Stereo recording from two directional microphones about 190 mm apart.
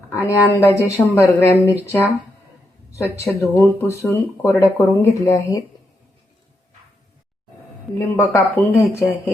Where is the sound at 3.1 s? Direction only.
15° left (ahead or behind).